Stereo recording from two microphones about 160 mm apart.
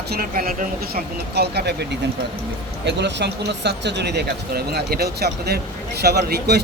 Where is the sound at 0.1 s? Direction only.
65° right (ahead or behind).